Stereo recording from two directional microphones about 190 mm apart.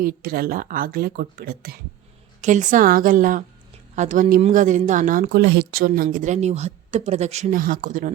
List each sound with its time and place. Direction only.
0.0 s speech: 50° right (ahead or behind)
2.4 s speech: 40° right (ahead or behind)